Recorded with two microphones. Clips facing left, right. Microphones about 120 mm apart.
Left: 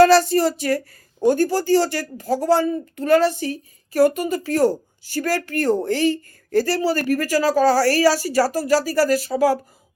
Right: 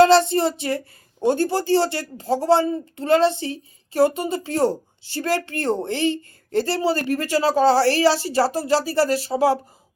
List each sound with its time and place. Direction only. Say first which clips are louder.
0.0 s speech: left 1 dB; 25° right (ahead or behind)